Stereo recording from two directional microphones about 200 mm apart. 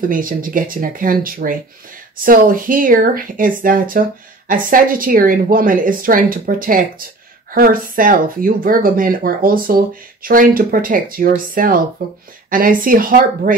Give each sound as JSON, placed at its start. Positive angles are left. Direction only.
{"t": 0.1, "sound": "a woman's voice", "side_deg": -45}